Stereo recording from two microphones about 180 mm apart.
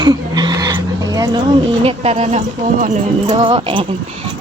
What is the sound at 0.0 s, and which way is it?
Speech, 25° right (ahead or behind).